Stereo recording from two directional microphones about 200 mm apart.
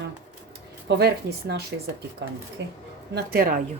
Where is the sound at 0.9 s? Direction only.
55° right (ahead or behind).